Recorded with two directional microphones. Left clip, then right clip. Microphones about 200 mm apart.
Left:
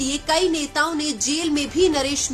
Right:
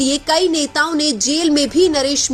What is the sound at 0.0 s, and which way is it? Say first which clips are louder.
A woman's voice: right 5 dB; 25° right (ahead or behind).